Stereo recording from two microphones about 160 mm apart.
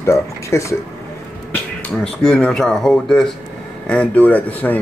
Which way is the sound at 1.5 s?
5° left (ahead or behind).